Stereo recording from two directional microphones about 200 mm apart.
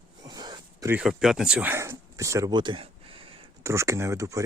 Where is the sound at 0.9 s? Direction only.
Centre (ahead or behind).